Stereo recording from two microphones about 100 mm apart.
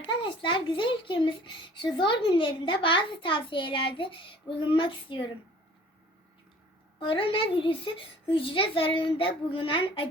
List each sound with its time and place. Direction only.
0.0 s a child's voice: 55° left (ahead or behind)
7.0 s a child's voice: 60° left (ahead or behind)